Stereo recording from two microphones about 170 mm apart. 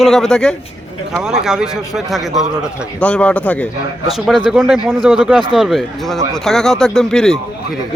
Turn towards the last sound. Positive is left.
turn(degrees=5)  # may be behind; listen again after turning